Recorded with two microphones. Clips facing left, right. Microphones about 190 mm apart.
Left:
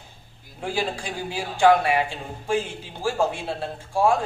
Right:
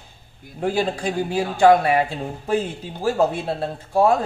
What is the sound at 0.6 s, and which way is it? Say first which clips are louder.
Speech: right 6 dB; 45° right (ahead or behind).